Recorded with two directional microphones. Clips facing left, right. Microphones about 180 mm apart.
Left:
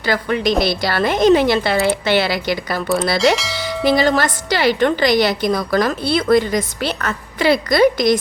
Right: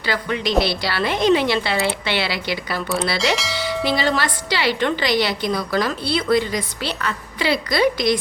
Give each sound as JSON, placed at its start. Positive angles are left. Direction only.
{"t": 0.0, "sound": "a woman's voice", "side_deg": 45}
{"t": 3.3, "sound": "bell", "side_deg": 0}
{"t": 3.8, "sound": "a woman's voice", "side_deg": 45}